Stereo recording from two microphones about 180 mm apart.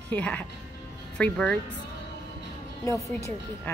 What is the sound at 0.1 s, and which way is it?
Speech, 10° left (ahead or behind).